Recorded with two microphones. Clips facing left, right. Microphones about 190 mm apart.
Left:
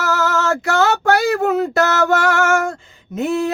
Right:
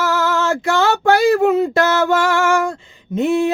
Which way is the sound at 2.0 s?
40° left (ahead or behind).